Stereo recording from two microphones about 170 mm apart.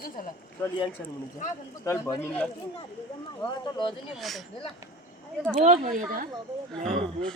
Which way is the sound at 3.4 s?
30° left (ahead or behind).